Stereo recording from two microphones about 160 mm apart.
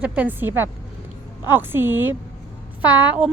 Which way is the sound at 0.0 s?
10° right (ahead or behind).